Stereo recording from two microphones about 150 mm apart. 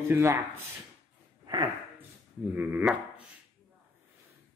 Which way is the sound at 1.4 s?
30° right (ahead or behind).